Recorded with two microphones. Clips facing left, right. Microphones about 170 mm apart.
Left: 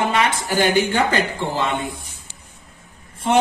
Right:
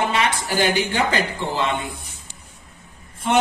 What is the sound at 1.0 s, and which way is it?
Speech, 45° left (ahead or behind).